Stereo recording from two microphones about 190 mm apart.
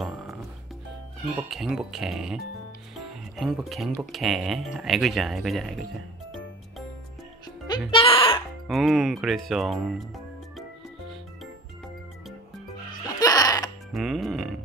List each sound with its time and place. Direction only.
1.3 s speech: 5° right (ahead or behind)
7.9 s music: 30° left (ahead or behind)
8.6 s speech: centre (ahead or behind)
13.2 s music: 20° left (ahead or behind)
13.9 s speech: centre (ahead or behind)